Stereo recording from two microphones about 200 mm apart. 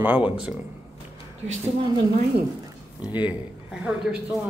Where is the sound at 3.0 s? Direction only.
10° right (ahead or behind).